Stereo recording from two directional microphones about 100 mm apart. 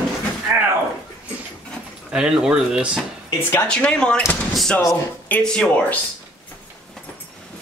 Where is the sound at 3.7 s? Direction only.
10° left (ahead or behind).